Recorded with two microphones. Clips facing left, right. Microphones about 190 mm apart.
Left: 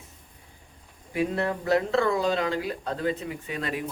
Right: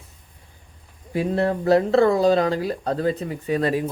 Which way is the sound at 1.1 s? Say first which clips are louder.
Right 5 dB; 35° right (ahead or behind).